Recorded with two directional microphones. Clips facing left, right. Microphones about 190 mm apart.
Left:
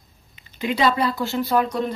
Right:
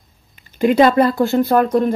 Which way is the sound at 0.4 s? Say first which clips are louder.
Right 9 dB; 50° right (ahead or behind).